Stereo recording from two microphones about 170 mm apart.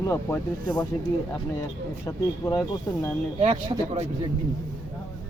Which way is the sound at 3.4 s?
30° right (ahead or behind).